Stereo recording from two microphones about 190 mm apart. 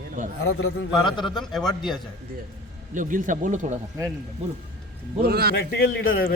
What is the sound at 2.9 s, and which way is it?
Speech, 45° right (ahead or behind).